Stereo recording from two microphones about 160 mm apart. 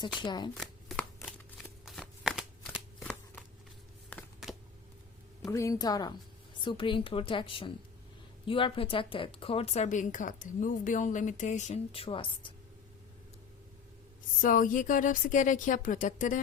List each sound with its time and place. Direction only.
0.2 s a woman's voice: 30° left (ahead or behind)
0.5 s chopping: 5° left (ahead or behind)
1.8 s shuffling cards: centre (ahead or behind)
3.0 s a sound: 10° left (ahead or behind)
5.5 s a woman's voice: 20° left (ahead or behind)
14.4 s a woman's voice: 55° left (ahead or behind)